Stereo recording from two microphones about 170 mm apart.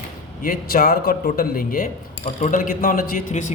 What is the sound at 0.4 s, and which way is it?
A man's voice, 55° left (ahead or behind).